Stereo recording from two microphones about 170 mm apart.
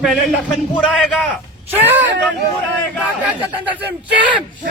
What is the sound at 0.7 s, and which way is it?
Speech, 5° left (ahead or behind).